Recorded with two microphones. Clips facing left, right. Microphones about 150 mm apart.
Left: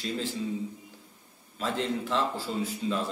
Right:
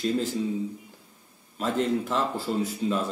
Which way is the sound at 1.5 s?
35° right (ahead or behind).